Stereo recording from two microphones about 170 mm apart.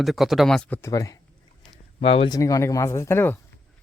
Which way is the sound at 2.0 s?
35° left (ahead or behind).